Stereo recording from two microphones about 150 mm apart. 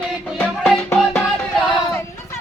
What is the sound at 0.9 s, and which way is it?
Music, 5° left (ahead or behind).